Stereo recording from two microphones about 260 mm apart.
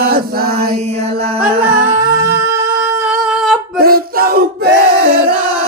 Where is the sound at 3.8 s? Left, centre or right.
Right.